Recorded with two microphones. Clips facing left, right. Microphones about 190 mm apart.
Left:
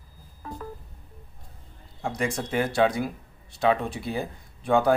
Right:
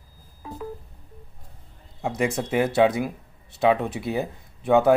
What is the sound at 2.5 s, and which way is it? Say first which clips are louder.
Speech: right 3 dB; 20° right (ahead or behind).